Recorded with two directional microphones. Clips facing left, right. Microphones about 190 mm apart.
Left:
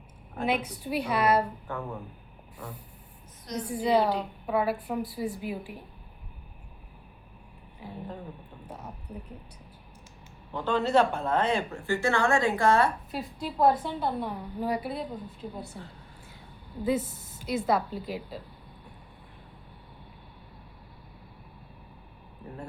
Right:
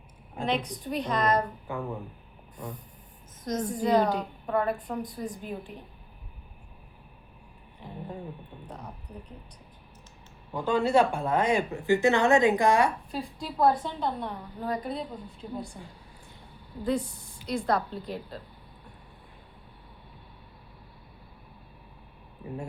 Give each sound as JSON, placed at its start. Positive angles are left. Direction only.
{"t": 0.4, "sound": "a woman's voice", "side_deg": 5}
{"t": 1.7, "sound": "speech", "side_deg": -10}
{"t": 3.4, "sound": "a woman's voice", "side_deg": -45}
{"t": 3.7, "sound": "a woman's voice", "side_deg": 5}
{"t": 7.8, "sound": "a woman's voice", "side_deg": 5}
{"t": 10.5, "sound": "speech", "side_deg": -10}
{"t": 13.1, "sound": "a woman's voice", "side_deg": 5}
{"t": 16.8, "sound": "a woman's voice", "side_deg": 5}